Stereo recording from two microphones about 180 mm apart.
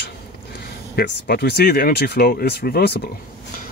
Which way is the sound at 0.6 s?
60° left (ahead or behind).